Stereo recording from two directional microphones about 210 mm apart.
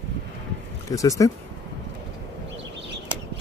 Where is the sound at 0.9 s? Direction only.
15° left (ahead or behind).